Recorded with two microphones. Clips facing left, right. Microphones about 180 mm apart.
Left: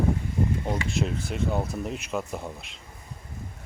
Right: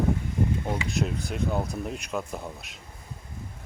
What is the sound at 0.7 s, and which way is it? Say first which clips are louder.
Speech: left 1 dB; centre (ahead or behind).